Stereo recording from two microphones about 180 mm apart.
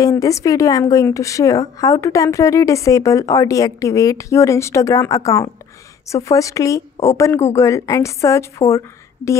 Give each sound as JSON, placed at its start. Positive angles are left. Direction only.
{"t": 0.0, "sound": "a woman's voice", "side_deg": 20}